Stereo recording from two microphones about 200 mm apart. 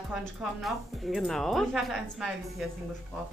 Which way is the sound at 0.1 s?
Centre (ahead or behind).